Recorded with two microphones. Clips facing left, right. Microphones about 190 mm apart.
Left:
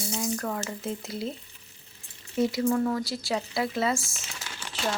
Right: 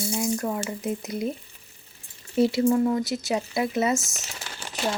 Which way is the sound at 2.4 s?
25° right (ahead or behind).